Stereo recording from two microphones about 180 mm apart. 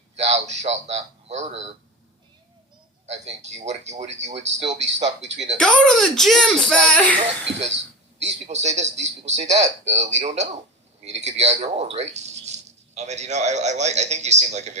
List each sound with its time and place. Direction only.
0.2 s a man's voice: 35° right (ahead or behind)
3.1 s speech: 40° right (ahead or behind)
5.5 s speech: 5° left (ahead or behind)
8.4 s speech: 40° right (ahead or behind)